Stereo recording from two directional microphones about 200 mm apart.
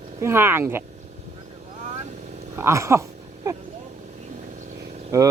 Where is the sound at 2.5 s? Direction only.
15° right (ahead or behind).